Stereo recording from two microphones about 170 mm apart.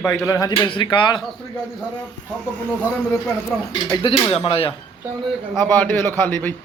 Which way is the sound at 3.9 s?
35° left (ahead or behind).